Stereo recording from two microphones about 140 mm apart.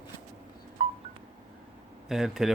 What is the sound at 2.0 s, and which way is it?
Speech, centre (ahead or behind).